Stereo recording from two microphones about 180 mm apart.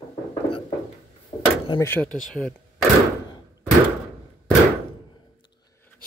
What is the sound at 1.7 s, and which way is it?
Speech, 15° left (ahead or behind).